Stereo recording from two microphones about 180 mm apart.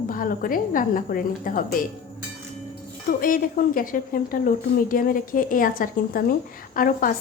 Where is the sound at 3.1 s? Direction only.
50° left (ahead or behind).